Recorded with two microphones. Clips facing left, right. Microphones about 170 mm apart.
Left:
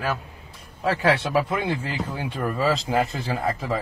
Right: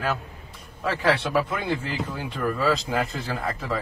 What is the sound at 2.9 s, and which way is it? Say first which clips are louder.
Speech: left 3 dB; 25° left (ahead or behind).